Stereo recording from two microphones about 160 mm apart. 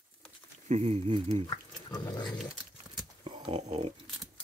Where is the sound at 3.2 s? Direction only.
35° right (ahead or behind).